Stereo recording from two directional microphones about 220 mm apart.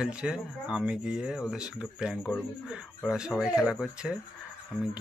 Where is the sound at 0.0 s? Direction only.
5° right (ahead or behind).